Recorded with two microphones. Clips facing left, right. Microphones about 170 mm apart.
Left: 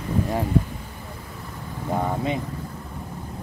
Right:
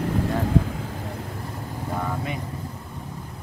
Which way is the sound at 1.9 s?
20° left (ahead or behind).